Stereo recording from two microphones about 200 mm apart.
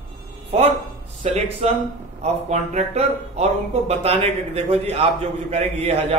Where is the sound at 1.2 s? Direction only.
30° right (ahead or behind).